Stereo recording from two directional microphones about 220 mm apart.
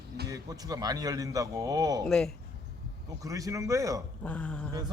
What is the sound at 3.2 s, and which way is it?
Speech, 15° right (ahead or behind).